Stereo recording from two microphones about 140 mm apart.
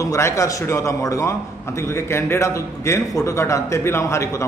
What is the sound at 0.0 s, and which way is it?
A man's voice, 20° left (ahead or behind).